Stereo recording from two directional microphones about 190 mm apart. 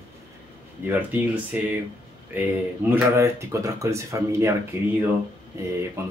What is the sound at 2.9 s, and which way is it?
Speech, 15° right (ahead or behind).